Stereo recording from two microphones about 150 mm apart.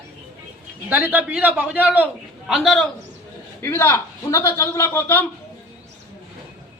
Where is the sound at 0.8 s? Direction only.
10° right (ahead or behind).